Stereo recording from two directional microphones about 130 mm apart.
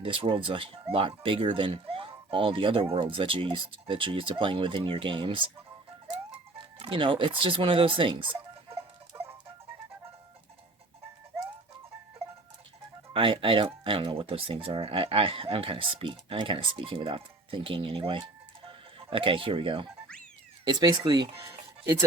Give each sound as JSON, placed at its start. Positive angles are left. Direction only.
{"t": 0.0, "sound": "speech", "side_deg": -45}
{"t": 6.7, "sound": "speech", "side_deg": -40}
{"t": 8.7, "sound": "chicken", "side_deg": -20}
{"t": 13.1, "sound": "speech", "side_deg": -40}